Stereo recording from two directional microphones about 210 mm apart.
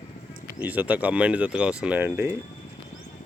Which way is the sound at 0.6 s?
5° right (ahead or behind).